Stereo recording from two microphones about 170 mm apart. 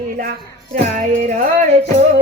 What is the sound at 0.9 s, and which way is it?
Music, 50° right (ahead or behind).